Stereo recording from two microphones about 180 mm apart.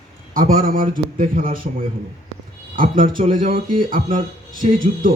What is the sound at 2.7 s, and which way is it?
A man's voice, 50° right (ahead or behind).